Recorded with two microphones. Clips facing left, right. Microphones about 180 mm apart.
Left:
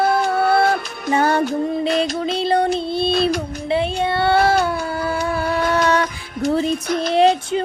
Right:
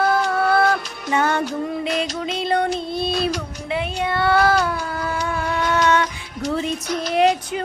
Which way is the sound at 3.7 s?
30° left (ahead or behind).